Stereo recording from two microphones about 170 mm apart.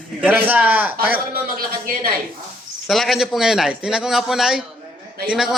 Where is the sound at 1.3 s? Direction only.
60° right (ahead or behind).